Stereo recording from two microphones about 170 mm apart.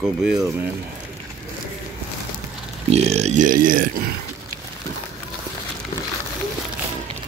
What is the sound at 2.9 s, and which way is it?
Speech, 40° right (ahead or behind).